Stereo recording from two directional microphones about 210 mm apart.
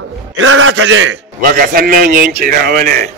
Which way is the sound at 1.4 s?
45° right (ahead or behind).